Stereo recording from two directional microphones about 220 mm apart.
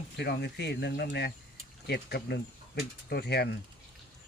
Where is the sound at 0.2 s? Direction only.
50° left (ahead or behind).